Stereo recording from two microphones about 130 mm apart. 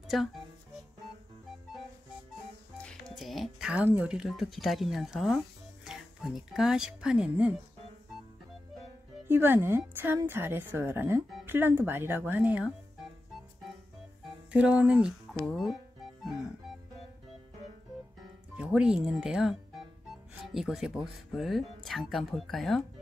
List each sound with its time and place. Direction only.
0.1 s speech: centre (ahead or behind)
2.8 s speech: 5° left (ahead or behind)
9.3 s a woman's voice: 15° right (ahead or behind)
14.5 s a woman's voice: 10° right (ahead or behind)
18.6 s a woman's voice: 5° right (ahead or behind)